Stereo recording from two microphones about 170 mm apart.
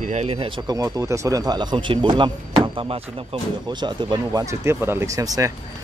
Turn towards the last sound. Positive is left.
turn(degrees=-20)  # may be behind; listen again after turning